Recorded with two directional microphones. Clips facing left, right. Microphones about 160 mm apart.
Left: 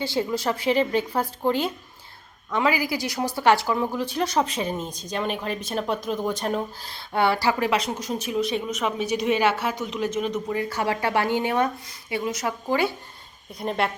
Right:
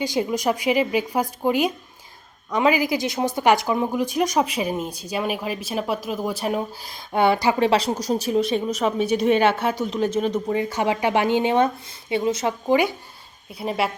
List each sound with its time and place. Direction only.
0.0 s a woman's voice: 15° right (ahead or behind)
7.7 s a woman's voice: 35° right (ahead or behind)
10.3 s speech: 20° right (ahead or behind)
13.5 s a woman's voice: 5° right (ahead or behind)